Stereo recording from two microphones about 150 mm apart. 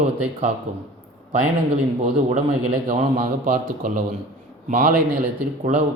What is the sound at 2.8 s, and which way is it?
A man's voice, 65° right (ahead or behind).